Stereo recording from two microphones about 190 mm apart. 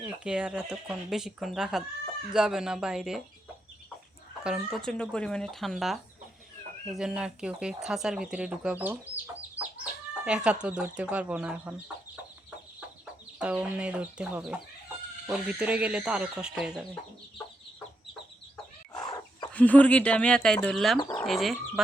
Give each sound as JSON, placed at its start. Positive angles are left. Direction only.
{"t": 0.0, "sound": "speech", "side_deg": -5}
{"t": 4.4, "sound": "speech", "side_deg": 0}
{"t": 13.4, "sound": "speech", "side_deg": -5}
{"t": 18.9, "sound": "chicken", "side_deg": 20}
{"t": 19.5, "sound": "speech", "side_deg": 10}